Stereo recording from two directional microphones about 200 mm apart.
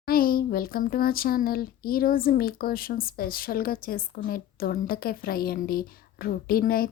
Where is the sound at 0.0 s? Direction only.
45° left (ahead or behind).